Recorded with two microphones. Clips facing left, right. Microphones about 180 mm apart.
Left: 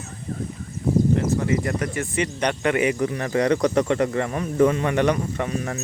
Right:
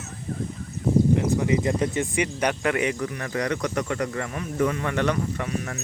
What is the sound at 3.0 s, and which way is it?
Speech, 25° left (ahead or behind).